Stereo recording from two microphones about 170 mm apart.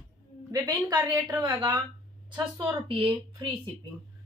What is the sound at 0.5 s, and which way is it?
A woman's voice, 15° right (ahead or behind).